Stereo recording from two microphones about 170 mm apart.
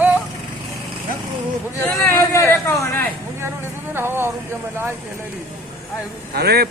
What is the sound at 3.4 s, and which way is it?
Speech, 15° right (ahead or behind).